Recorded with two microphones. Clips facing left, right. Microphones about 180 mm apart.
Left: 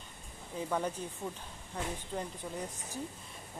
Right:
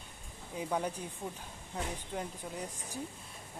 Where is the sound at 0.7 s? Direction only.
10° right (ahead or behind).